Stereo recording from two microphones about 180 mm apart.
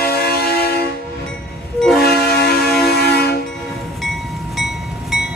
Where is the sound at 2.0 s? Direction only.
60° left (ahead or behind).